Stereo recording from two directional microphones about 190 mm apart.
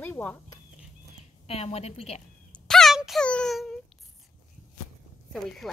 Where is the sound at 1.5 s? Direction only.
30° left (ahead or behind).